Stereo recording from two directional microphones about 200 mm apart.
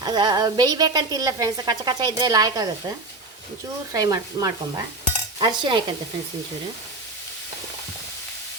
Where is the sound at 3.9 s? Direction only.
20° right (ahead or behind).